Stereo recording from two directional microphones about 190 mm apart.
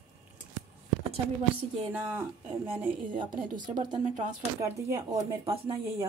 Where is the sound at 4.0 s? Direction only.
40° right (ahead or behind).